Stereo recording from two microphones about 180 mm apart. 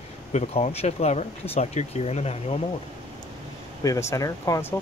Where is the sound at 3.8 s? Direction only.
15° left (ahead or behind).